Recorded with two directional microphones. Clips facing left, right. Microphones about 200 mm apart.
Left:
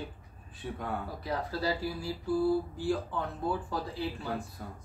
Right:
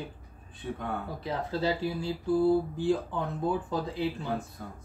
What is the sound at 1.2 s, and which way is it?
Speech, 25° right (ahead or behind).